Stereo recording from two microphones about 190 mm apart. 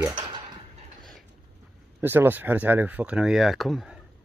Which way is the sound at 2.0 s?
10° right (ahead or behind).